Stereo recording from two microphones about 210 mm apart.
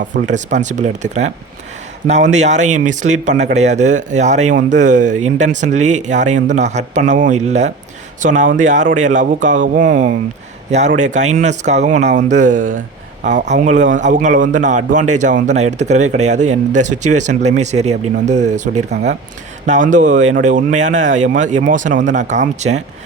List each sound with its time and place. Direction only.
0.1 s a man's voice: 35° right (ahead or behind)